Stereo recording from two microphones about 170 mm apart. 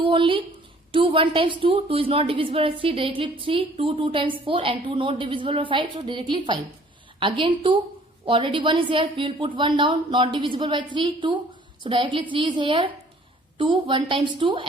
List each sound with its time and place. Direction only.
0.0 s a woman's voice: 30° right (ahead or behind)